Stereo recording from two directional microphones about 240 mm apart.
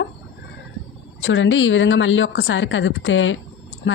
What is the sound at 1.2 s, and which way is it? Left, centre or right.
Speech, left.